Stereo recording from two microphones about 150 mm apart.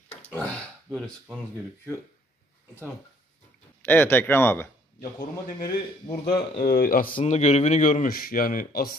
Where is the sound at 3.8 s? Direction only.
15° left (ahead or behind).